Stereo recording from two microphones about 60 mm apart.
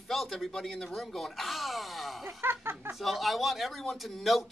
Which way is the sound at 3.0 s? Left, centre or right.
Centre.